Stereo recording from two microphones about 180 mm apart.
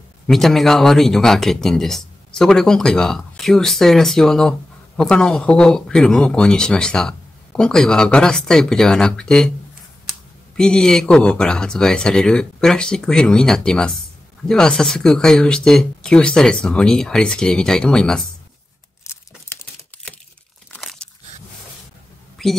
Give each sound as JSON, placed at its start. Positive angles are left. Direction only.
{"t": 0.3, "sound": "speech", "side_deg": 0}
{"t": 10.5, "sound": "speech", "side_deg": 5}
{"t": 19.1, "sound": "crumpling", "side_deg": 15}
{"t": 20.7, "sound": "crunch", "side_deg": 5}
{"t": 22.4, "sound": "a sound", "side_deg": 0}